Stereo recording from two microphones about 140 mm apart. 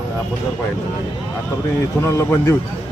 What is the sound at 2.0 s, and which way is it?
Speech, 20° left (ahead or behind).